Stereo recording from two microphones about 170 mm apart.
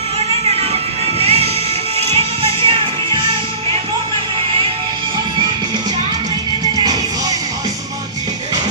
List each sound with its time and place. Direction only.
1.2 s music: 35° right (ahead or behind)
6.7 s music: 20° right (ahead or behind)